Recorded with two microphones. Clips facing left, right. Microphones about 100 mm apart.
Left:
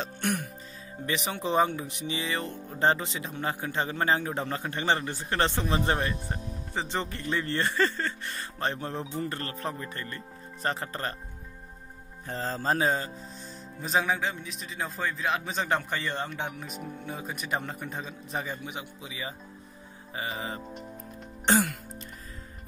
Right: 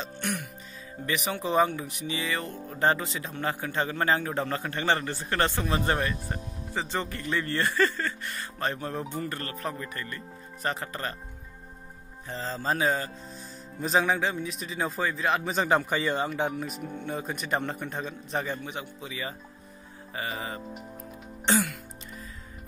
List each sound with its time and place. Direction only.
0.0 s music: 50° left (ahead or behind)
1.0 s speech: 25° left (ahead or behind)
12.3 s music: 45° left (ahead or behind); by 13.1 s 25° left (ahead or behind)
13.7 s a man's voice: centre (ahead or behind); by 20.6 s 20° left (ahead or behind)